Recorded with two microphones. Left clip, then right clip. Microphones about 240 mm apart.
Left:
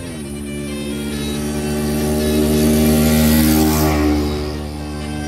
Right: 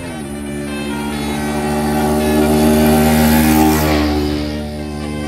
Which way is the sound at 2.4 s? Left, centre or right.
Centre.